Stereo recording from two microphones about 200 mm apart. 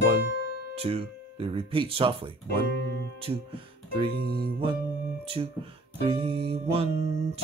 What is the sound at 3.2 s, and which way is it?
Speech, 25° right (ahead or behind).